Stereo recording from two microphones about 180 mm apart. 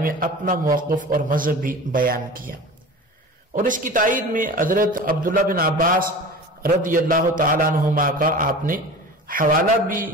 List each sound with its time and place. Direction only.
0.0 s a man's voice: 50° right (ahead or behind)
3.5 s a man's voice: 45° right (ahead or behind)